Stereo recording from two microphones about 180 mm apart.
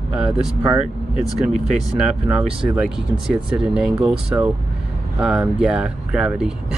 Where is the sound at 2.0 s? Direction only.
5° right (ahead or behind).